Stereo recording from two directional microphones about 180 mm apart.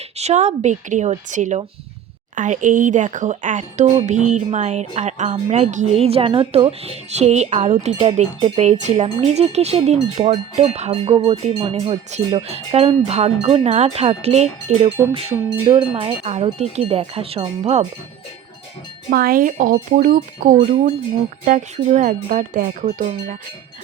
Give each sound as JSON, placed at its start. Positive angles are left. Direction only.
{"t": 0.2, "sound": "speech", "side_deg": -40}
{"t": 19.1, "sound": "speech", "side_deg": -55}